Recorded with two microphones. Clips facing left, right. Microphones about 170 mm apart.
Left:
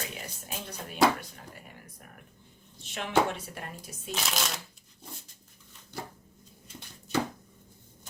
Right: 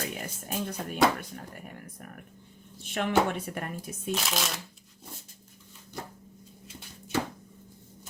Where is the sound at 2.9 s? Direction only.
55° right (ahead or behind).